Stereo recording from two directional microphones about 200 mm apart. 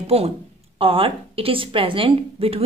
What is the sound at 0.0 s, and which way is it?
Speech, 30° right (ahead or behind).